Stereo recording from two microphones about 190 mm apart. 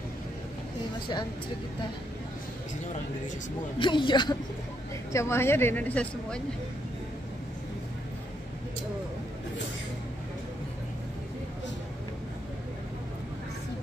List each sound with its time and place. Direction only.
3.8 s a woman's voice: 25° left (ahead or behind); by 6.4 s 5° left (ahead or behind)